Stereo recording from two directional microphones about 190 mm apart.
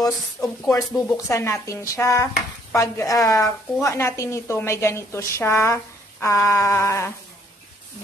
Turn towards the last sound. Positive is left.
turn(degrees=15)  # may be behind; listen again after turning